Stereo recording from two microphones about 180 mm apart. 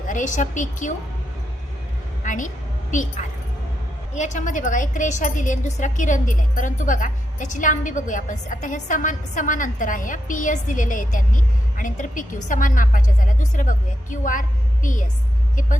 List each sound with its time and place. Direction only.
0.1 s a woman's voice: 45° left (ahead or behind)
2.2 s a woman's voice: 45° left (ahead or behind)